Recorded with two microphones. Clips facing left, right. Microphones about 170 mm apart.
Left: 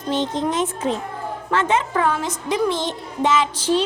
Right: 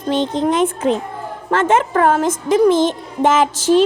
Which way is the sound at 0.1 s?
60° right (ahead or behind).